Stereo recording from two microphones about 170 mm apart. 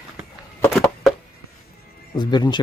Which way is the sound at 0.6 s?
5° left (ahead or behind).